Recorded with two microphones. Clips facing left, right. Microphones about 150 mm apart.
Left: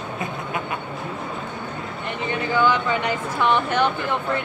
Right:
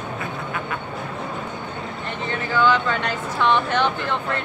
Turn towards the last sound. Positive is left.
turn(degrees=10)  # may be behind; listen again after turning